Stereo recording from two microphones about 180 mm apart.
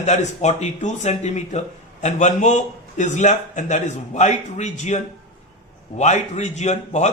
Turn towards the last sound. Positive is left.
turn(degrees=40)  # may be behind; listen again after turning